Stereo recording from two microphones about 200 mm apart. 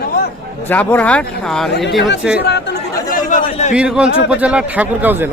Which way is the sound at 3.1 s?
40° left (ahead or behind).